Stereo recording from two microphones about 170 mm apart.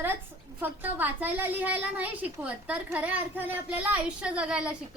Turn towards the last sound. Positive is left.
turn(degrees=-5)  # may be behind; listen again after turning